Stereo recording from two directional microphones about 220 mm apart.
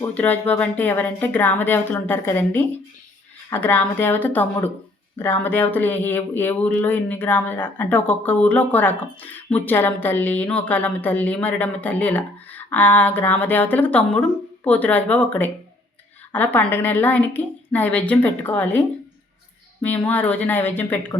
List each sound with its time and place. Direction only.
0.0 s speech: 5° left (ahead or behind)
19.8 s speech: 5° left (ahead or behind)